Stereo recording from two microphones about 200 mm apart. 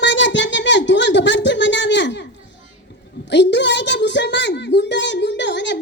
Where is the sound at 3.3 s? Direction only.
60° left (ahead or behind).